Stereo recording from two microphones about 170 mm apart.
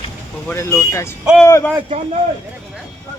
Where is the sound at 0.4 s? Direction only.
15° left (ahead or behind).